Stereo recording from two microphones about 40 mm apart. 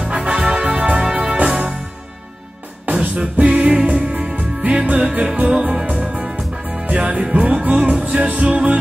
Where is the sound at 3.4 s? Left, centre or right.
Right.